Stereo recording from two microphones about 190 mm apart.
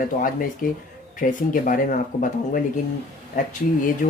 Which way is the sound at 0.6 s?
45° left (ahead or behind).